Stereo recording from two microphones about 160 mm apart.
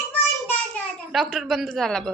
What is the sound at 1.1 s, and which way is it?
A woman's voice, centre (ahead or behind).